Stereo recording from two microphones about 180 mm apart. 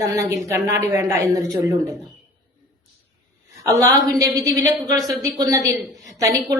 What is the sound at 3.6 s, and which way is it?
A woman's voice, 20° right (ahead or behind).